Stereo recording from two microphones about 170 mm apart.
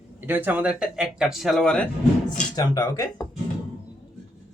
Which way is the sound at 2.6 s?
25° left (ahead or behind).